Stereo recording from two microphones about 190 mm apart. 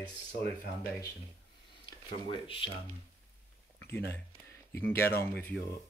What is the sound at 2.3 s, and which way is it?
Speech, 25° left (ahead or behind).